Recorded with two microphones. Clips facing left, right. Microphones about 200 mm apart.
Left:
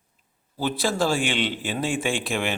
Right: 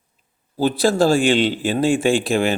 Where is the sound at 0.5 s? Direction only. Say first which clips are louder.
Right 8 dB; 35° right (ahead or behind).